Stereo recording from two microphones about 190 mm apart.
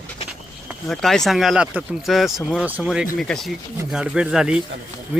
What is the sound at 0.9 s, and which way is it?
Speech, centre (ahead or behind).